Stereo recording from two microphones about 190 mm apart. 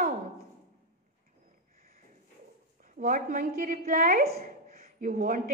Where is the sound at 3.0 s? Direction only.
40° right (ahead or behind).